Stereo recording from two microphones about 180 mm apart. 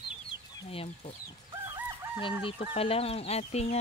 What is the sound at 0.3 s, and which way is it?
Chicken, 30° left (ahead or behind).